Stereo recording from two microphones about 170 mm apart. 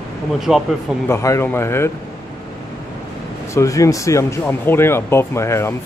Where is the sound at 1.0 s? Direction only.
15° left (ahead or behind).